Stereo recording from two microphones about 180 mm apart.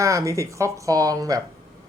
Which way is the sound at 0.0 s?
15° right (ahead or behind).